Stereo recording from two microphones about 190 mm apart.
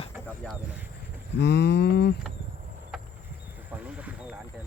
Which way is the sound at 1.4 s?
65° left (ahead or behind).